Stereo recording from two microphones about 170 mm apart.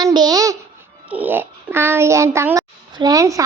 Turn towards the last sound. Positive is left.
turn(degrees=-20)  # may be behind; listen again after turning